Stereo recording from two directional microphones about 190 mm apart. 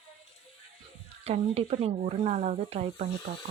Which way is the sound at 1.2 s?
30° right (ahead or behind).